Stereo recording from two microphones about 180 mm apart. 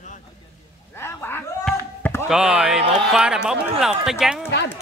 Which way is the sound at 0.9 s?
15° left (ahead or behind).